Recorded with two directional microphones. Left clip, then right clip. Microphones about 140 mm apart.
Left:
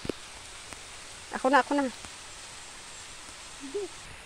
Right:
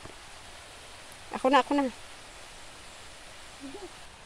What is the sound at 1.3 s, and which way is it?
Speech, 20° right (ahead or behind).